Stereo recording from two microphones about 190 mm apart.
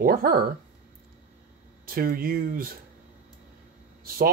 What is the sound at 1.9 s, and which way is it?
Speech, 50° right (ahead or behind).